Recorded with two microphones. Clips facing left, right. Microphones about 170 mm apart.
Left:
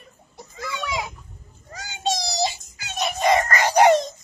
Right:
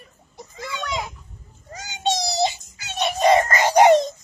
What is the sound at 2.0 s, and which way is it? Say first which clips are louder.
Child singing: right 3 dB; 25° right (ahead or behind).